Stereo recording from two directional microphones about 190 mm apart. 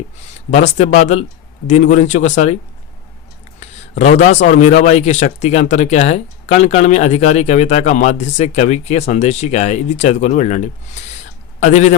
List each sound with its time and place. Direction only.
0.5 s speech: 40° left (ahead or behind)
3.6 s speech: 35° left (ahead or behind)